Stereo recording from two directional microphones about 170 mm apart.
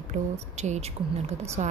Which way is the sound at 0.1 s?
40° right (ahead or behind).